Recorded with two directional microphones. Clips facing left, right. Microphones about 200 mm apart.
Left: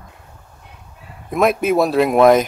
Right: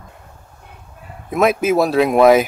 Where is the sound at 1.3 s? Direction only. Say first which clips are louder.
Right 1 dB; centre (ahead or behind).